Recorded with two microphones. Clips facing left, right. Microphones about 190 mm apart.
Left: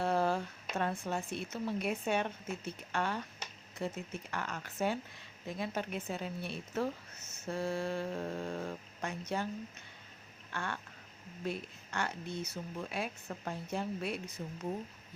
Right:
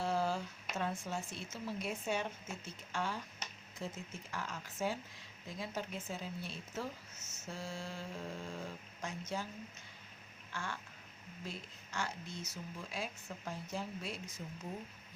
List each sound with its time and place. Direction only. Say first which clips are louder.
0.0 s speech: left 4 dB; 60° left (ahead or behind)
10.5 s speech: left 4 dB; 60° left (ahead or behind)